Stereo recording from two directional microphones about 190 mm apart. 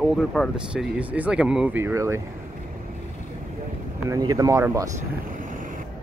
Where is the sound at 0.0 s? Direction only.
Centre (ahead or behind); by 2.2 s 15° right (ahead or behind).